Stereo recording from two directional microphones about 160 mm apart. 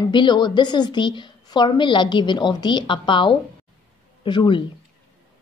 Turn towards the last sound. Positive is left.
turn(degrees=30)  # may be behind; listen again after turning